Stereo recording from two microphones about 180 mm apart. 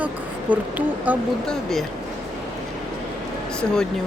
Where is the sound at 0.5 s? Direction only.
10° right (ahead or behind).